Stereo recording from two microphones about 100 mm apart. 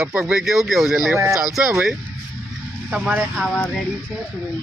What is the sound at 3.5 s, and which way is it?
Speech, 15° left (ahead or behind).